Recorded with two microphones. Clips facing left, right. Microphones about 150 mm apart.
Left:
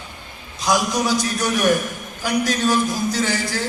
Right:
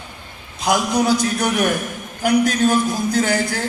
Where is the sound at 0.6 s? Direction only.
55° right (ahead or behind).